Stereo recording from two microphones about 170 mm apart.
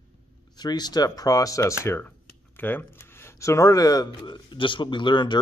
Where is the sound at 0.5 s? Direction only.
25° left (ahead or behind).